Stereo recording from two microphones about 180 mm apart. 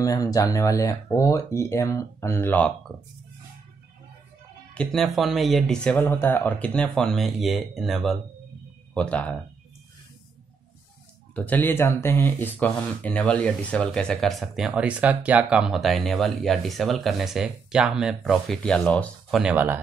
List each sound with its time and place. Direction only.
0.0 s speech: 20° left (ahead or behind)
4.7 s speech: centre (ahead or behind)
11.3 s speech: 10° left (ahead or behind)
19.4 s speech: 10° right (ahead or behind)